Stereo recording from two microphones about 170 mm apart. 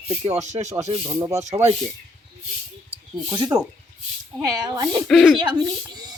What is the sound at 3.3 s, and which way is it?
Speech, 20° right (ahead or behind).